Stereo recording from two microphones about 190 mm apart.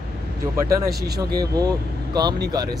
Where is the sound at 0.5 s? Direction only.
15° right (ahead or behind).